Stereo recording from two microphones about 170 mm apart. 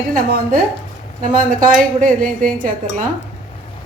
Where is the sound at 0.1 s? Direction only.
55° right (ahead or behind).